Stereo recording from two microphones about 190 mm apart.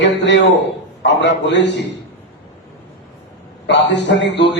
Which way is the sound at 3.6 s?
65° left (ahead or behind).